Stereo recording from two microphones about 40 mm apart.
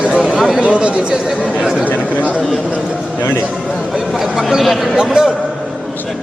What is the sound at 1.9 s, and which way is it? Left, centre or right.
Speech, left.